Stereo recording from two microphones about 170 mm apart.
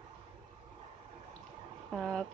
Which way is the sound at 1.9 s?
5° left (ahead or behind).